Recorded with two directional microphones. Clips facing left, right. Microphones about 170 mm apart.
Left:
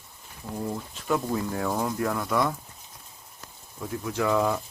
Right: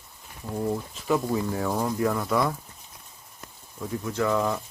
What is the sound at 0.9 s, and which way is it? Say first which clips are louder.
Speech: even; centre (ahead or behind).